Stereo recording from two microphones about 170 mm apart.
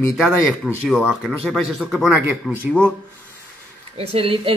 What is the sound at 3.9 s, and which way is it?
Speech, 35° right (ahead or behind).